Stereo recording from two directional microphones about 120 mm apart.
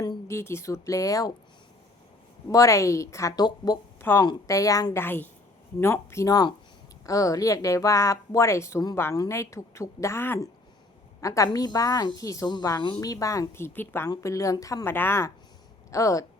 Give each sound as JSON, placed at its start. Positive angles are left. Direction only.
{"t": 0.3, "sound": "speech", "side_deg": 20}
{"t": 2.5, "sound": "speech", "side_deg": 25}
{"t": 5.0, "sound": "a woman's voice", "side_deg": 15}